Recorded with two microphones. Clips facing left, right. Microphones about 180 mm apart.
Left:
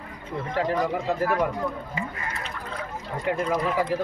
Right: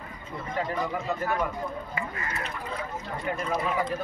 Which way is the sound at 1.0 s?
90° left.